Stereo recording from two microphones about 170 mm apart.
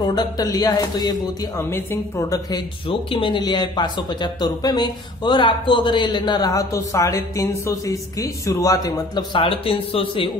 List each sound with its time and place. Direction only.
0.0 s speech: 25° left (ahead or behind)
2.9 s speech: 30° left (ahead or behind)